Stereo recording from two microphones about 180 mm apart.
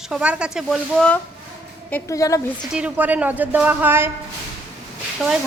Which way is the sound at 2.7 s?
5° right (ahead or behind).